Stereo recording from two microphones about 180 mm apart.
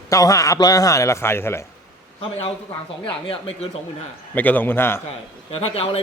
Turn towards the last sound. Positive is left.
turn(degrees=35)  # may be behind; listen again after turning